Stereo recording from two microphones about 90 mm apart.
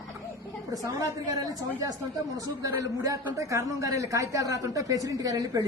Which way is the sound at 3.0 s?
40° right (ahead or behind).